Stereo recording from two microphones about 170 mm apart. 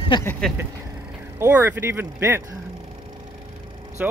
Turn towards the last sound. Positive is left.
turn(degrees=-10)  # may be behind; listen again after turning